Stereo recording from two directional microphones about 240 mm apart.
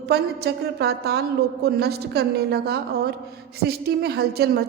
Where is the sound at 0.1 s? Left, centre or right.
Right.